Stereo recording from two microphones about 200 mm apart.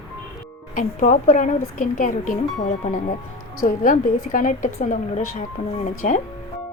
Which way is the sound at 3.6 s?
45° left (ahead or behind).